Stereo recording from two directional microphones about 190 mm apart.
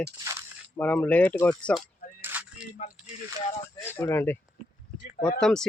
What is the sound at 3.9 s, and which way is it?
Speech, 10° left (ahead or behind).